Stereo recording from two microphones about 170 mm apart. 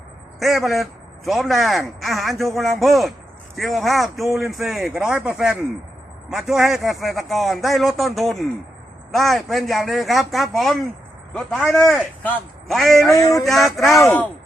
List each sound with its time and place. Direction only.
0.3 s a man's voice: centre (ahead or behind)
13.1 s a sound: 20° left (ahead or behind)
13.4 s a man's voice: centre (ahead or behind)